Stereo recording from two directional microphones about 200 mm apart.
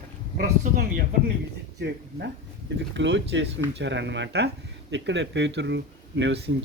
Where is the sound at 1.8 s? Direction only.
55° right (ahead or behind).